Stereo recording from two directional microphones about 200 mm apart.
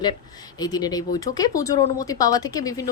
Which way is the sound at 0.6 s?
20° left (ahead or behind).